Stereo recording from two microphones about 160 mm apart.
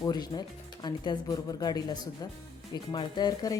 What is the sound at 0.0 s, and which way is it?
Speech, 25° left (ahead or behind).